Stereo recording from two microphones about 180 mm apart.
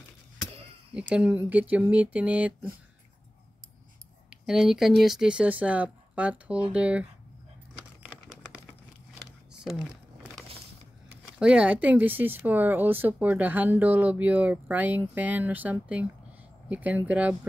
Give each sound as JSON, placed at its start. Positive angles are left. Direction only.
{"t": 0.9, "sound": "speech", "side_deg": -5}
{"t": 4.3, "sound": "speech", "side_deg": -5}
{"t": 8.0, "sound": "a sound", "side_deg": -5}
{"t": 11.3, "sound": "speech", "side_deg": -5}